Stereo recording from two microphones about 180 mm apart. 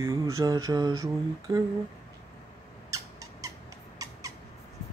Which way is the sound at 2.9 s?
20° right (ahead or behind).